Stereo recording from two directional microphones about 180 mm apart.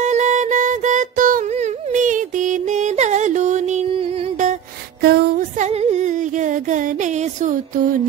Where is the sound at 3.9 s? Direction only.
30° right (ahead or behind).